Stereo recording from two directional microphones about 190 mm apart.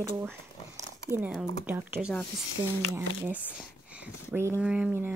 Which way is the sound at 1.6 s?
10° right (ahead or behind).